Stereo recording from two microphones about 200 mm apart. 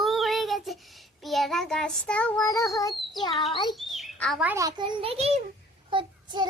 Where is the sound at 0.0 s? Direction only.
Centre (ahead or behind); by 2.9 s 15° left (ahead or behind).